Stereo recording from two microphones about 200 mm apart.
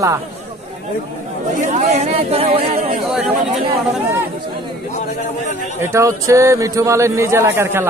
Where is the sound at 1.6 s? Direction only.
35° right (ahead or behind).